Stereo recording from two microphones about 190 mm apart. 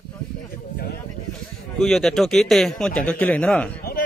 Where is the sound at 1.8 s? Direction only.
Centre (ahead or behind).